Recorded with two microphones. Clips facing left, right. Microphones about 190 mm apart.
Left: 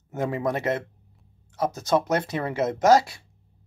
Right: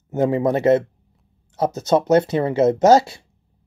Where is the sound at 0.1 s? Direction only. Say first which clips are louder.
Right 8 dB; 25° right (ahead or behind).